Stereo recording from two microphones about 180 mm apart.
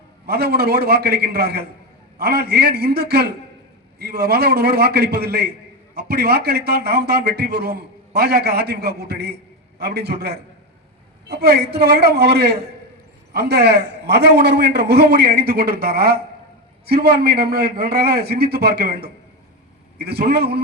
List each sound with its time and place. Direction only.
0.3 s a man's voice: 60° right (ahead or behind)